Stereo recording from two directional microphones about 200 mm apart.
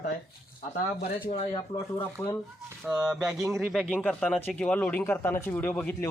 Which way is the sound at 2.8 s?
5° right (ahead or behind).